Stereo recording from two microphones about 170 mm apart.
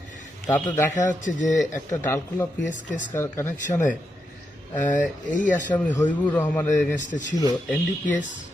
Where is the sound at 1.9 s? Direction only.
15° left (ahead or behind).